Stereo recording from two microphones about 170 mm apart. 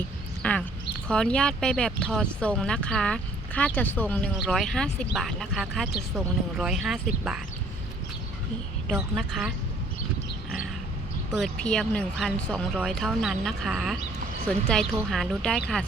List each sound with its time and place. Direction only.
0.4 s speech: 10° left (ahead or behind)
8.9 s speech: 5° right (ahead or behind)
11.3 s speech: centre (ahead or behind)